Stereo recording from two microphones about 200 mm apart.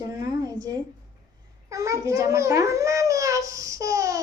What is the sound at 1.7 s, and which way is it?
Babbling, 15° right (ahead or behind).